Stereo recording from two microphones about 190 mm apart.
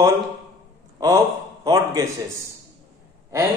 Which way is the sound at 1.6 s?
20° right (ahead or behind).